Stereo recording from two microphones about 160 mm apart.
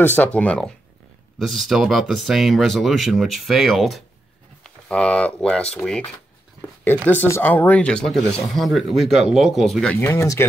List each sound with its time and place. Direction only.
0.0 s speech: 10° left (ahead or behind)
9.9 s speech: 15° left (ahead or behind)